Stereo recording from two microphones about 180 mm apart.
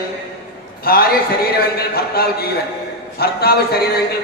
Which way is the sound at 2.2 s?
55° left (ahead or behind).